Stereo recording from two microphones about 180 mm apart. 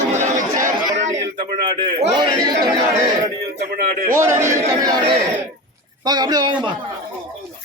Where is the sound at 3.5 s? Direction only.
50° right (ahead or behind).